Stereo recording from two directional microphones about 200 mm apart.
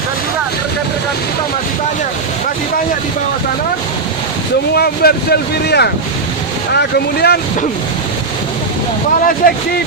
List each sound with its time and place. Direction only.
4.7 s speech: 55° left (ahead or behind)
9.2 s speech: 45° left (ahead or behind)